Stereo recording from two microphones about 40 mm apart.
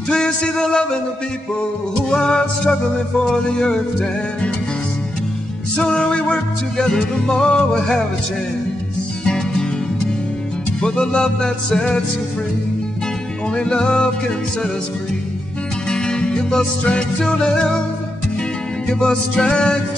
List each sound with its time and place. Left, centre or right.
0.1 s music: left
2.1 s music: left
5.8 s music: left
9.2 s music: left
10.8 s music: left
13.5 s music: left
15.9 s music: left
18.9 s music: left